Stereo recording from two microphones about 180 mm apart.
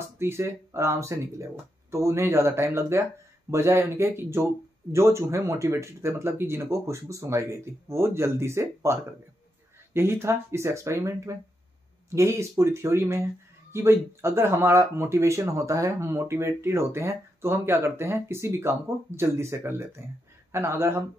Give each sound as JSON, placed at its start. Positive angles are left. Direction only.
{"t": 0.0, "sound": "speech", "side_deg": -15}